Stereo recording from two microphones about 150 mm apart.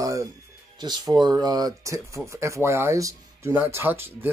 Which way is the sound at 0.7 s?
30° right (ahead or behind).